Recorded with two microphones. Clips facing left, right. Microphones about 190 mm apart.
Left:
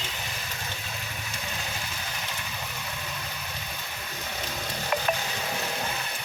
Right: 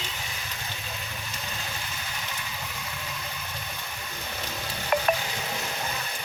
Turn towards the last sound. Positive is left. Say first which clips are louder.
# right 3 dB
turn(degrees=-55)  # may be behind; listen again after turning